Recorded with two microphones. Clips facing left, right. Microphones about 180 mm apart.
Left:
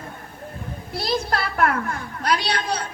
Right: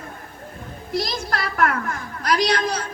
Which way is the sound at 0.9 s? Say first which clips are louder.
Left 1 dB; 30° left (ahead or behind).